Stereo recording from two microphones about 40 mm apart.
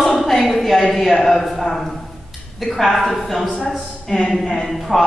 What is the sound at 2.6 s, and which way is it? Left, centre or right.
Speech, centre.